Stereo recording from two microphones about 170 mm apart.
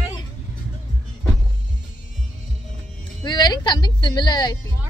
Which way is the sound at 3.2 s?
25° left (ahead or behind).